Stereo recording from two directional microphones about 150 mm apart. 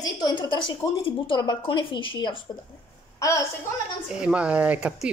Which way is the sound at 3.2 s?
20° left (ahead or behind).